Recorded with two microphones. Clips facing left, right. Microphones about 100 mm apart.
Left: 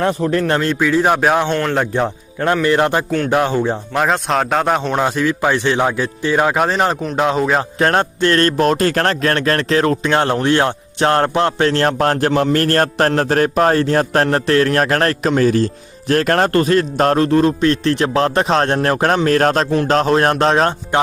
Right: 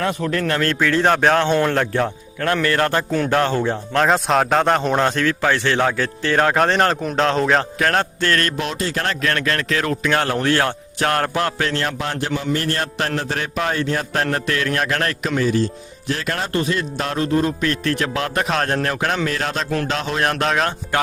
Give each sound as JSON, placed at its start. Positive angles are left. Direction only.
{"t": 0.0, "sound": "speech", "side_deg": 30}
{"t": 0.6, "sound": "speech", "side_deg": 10}
{"t": 1.5, "sound": "speech", "side_deg": -10}
{"t": 1.7, "sound": "speech", "side_deg": 15}
{"t": 4.0, "sound": "speech", "side_deg": 0}
{"t": 7.8, "sound": "speech", "side_deg": 25}
{"t": 9.2, "sound": "speech", "side_deg": 35}
{"t": 15.4, "sound": "speech", "side_deg": 50}